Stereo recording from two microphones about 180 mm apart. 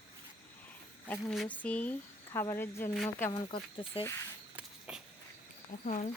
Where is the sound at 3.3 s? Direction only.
30° left (ahead or behind).